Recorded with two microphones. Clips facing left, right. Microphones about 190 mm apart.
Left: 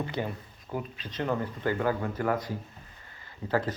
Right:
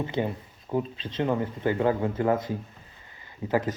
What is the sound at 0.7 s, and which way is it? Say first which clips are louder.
Speech: right 7 dB; 25° right (ahead or behind).